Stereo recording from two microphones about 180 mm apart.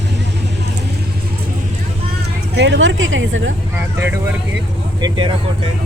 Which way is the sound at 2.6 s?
80° right.